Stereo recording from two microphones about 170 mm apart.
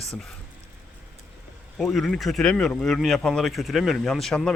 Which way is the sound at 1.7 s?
Centre (ahead or behind).